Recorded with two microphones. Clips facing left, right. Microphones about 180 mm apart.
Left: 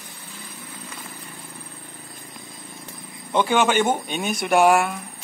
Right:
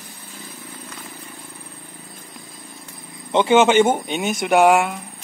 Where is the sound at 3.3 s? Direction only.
20° right (ahead or behind).